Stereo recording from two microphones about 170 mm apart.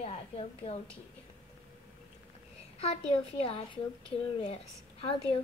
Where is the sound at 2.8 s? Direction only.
35° left (ahead or behind).